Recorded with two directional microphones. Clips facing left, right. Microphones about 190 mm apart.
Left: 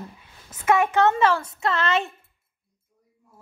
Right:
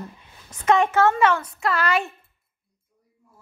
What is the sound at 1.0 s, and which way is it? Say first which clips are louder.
Speech: right 1 dB; 20° left (ahead or behind).